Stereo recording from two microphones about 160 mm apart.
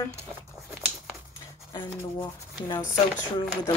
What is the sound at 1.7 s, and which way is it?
Speech, 30° left (ahead or behind).